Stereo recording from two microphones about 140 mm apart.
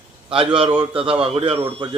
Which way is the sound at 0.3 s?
40° right (ahead or behind).